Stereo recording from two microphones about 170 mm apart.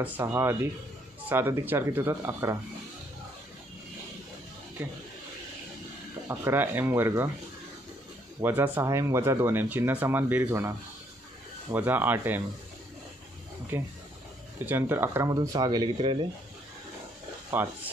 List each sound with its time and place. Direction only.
0.0 s speech: 15° right (ahead or behind)
4.8 s speech: 15° right (ahead or behind)
6.2 s speech: 15° right (ahead or behind)
8.4 s speech: 10° right (ahead or behind)
11.7 s speech: 10° right (ahead or behind)
14.7 s speech: 10° right (ahead or behind)
17.6 s speech: 10° right (ahead or behind)